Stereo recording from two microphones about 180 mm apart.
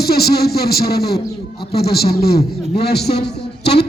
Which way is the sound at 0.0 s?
60° left (ahead or behind).